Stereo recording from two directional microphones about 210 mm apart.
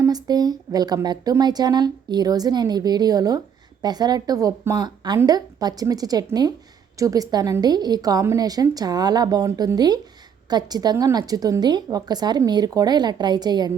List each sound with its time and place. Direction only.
0.0 s a woman's voice: 20° right (ahead or behind)